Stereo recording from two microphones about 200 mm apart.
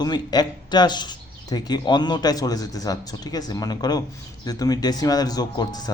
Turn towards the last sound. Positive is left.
turn(degrees=20)  # may be behind; listen again after turning